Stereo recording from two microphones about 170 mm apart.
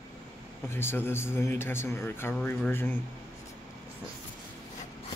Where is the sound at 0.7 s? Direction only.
15° left (ahead or behind).